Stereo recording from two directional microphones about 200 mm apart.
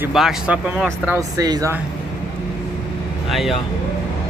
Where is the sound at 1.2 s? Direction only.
20° right (ahead or behind).